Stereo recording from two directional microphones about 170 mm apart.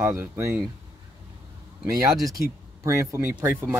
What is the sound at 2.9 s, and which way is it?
Speech, 15° right (ahead or behind).